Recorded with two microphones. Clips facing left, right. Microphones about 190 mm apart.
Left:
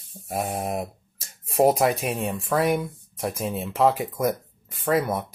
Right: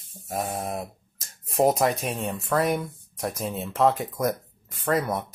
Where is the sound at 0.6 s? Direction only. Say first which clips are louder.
Left 3 dB; 15° left (ahead or behind).